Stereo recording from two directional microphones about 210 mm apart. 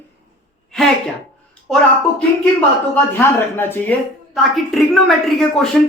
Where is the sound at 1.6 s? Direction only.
Centre (ahead or behind).